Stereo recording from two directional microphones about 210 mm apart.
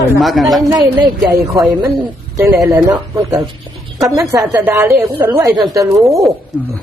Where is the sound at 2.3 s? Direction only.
15° right (ahead or behind).